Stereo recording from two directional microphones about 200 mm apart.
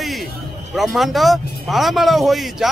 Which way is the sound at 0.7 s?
Centre (ahead or behind).